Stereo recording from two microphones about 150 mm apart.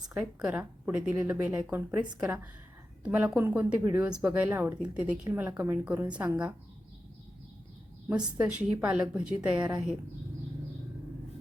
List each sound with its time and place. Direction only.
0.1 s a woman's voice: 15° right (ahead or behind)
8.1 s a woman's voice: 5° right (ahead or behind)